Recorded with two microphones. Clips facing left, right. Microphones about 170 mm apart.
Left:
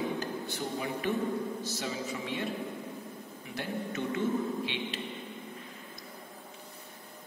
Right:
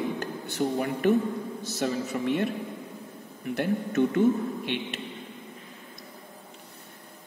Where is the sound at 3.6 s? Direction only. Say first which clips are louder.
Right 10 dB; 55° right (ahead or behind).